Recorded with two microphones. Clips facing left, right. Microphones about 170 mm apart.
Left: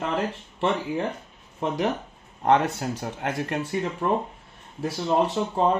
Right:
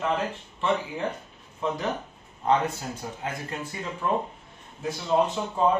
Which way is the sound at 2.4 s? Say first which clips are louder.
Left 3 dB; 75° left (ahead or behind).